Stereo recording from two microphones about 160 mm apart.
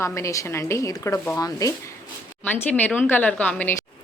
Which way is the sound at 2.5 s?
10° left (ahead or behind).